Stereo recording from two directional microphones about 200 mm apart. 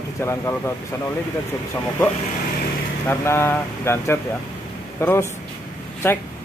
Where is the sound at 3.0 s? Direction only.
10° left (ahead or behind).